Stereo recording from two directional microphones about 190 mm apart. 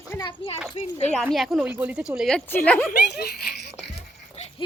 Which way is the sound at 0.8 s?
35° left (ahead or behind).